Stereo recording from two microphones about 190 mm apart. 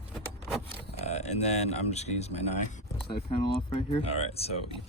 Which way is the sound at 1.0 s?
35° left (ahead or behind).